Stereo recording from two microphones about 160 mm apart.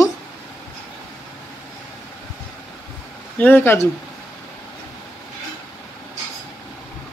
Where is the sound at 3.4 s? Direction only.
10° left (ahead or behind).